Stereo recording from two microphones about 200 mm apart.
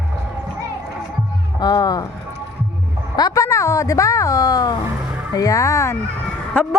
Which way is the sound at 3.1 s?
15° left (ahead or behind).